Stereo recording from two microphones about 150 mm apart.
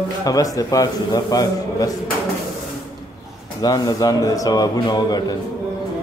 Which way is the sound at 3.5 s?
25° left (ahead or behind).